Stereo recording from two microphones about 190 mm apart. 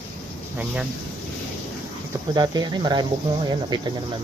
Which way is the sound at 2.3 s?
20° right (ahead or behind).